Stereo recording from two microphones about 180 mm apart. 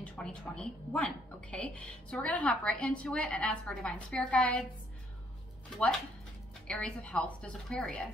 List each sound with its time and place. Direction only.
0.0 s a woman's voice: 5° left (ahead or behind)
6.7 s a woman's voice: 5° left (ahead or behind)